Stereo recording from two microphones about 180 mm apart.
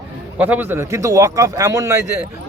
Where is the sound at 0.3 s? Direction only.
10° right (ahead or behind).